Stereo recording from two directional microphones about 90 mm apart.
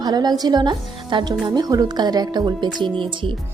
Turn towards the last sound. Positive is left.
turn(degrees=-70)  # may be behind; listen again after turning